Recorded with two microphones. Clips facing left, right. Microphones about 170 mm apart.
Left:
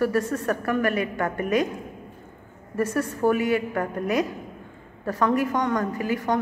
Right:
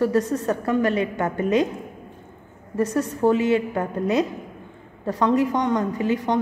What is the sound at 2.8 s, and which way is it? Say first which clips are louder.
A woman's voice: right 2 dB; 20° right (ahead or behind).